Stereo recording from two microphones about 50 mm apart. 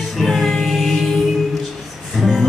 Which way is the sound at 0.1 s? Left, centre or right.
Centre.